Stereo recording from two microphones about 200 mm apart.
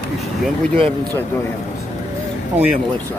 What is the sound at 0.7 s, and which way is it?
Speech, 30° right (ahead or behind).